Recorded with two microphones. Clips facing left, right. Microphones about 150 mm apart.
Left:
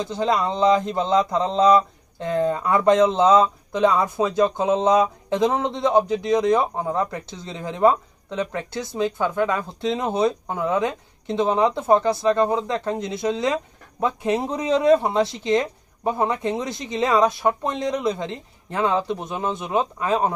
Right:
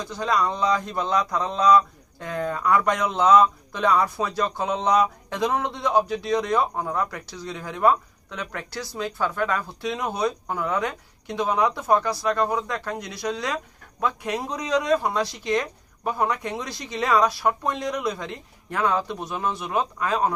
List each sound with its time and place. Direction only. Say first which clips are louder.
0.0 s speech: left 3 dB; 25° left (ahead or behind)